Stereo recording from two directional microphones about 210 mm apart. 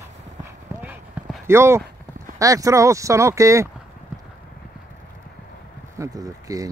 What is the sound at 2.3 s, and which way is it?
Speech, 15° right (ahead or behind).